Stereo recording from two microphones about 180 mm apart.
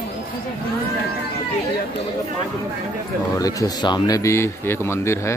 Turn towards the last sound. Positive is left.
turn(degrees=15)  # may be behind; listen again after turning